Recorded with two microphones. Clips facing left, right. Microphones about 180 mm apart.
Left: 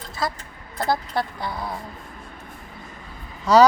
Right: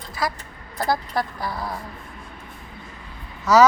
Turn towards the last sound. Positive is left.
turn(degrees=30)  # may be behind; listen again after turning